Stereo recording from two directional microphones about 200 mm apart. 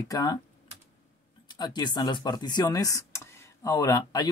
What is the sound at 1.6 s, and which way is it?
Speech, 20° left (ahead or behind).